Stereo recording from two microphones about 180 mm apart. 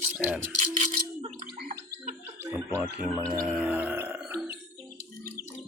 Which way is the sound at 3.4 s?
5° right (ahead or behind).